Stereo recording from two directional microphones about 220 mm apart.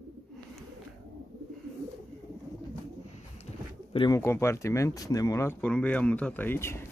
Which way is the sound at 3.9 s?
20° left (ahead or behind).